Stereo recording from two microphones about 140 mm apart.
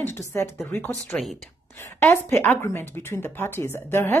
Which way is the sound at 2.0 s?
15° left (ahead or behind).